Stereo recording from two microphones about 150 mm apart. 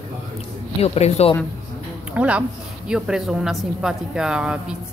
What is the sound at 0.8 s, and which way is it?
Speech, 45° left (ahead or behind).